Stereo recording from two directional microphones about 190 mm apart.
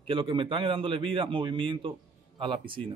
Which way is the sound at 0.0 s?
30° right (ahead or behind).